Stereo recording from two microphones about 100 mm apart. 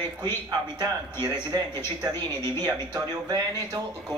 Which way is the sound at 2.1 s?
45° right (ahead or behind).